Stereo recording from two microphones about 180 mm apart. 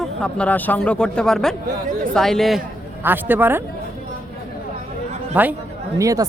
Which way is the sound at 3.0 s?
10° right (ahead or behind).